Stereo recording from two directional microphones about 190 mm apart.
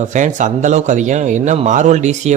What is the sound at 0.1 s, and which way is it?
A man's voice, 40° right (ahead or behind).